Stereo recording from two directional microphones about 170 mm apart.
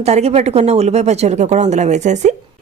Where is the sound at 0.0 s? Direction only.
40° right (ahead or behind).